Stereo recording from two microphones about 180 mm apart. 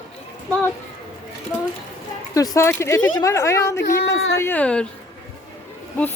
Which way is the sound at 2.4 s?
15° left (ahead or behind).